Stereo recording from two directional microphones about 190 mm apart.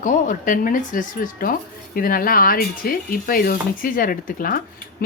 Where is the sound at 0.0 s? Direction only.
45° left (ahead or behind).